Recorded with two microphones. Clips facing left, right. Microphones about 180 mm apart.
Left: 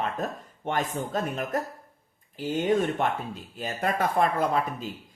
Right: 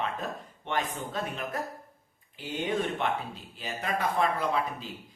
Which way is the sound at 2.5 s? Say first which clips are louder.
Left 6 dB; 45° left (ahead or behind).